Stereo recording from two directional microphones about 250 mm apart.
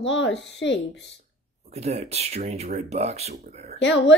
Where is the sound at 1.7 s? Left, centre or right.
Right.